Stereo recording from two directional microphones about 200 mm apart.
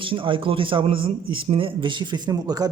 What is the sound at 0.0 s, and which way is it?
A man's voice, 25° right (ahead or behind).